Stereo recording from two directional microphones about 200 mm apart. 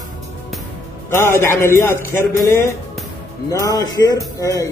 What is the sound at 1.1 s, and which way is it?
A man's voice, 10° left (ahead or behind).